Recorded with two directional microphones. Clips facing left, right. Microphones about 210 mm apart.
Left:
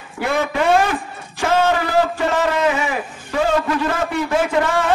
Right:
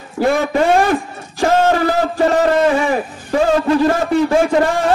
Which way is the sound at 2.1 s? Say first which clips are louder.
Right 6 dB; 35° right (ahead or behind).